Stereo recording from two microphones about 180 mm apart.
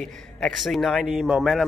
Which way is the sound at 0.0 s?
Centre (ahead or behind).